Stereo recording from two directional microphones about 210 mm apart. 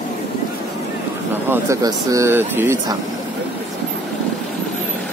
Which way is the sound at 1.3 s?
10° right (ahead or behind).